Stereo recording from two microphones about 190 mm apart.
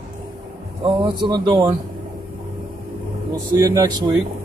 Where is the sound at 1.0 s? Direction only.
25° right (ahead or behind).